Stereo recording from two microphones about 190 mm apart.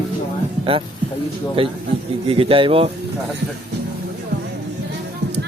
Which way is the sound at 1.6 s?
30° right (ahead or behind).